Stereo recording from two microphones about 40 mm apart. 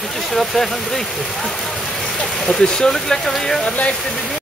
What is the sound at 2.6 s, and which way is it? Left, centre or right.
Speech, centre.